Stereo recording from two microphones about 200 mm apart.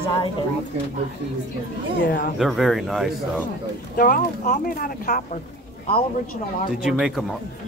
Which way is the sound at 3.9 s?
45° left (ahead or behind).